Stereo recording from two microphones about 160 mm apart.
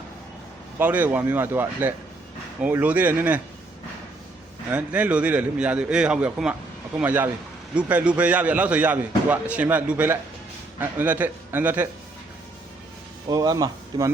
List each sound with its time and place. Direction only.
0.8 s a man's voice: 10° right (ahead or behind)
4.7 s a man's voice: 10° right (ahead or behind)
13.2 s speech: 25° right (ahead or behind)